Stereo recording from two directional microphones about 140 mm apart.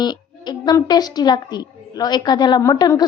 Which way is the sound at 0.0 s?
30° left (ahead or behind).